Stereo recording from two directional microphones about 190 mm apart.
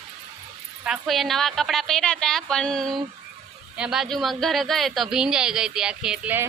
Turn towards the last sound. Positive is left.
turn(degrees=-5)  # may be behind; listen again after turning